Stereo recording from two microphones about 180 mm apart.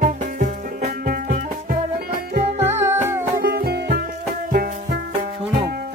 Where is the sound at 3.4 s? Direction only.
60° right (ahead or behind).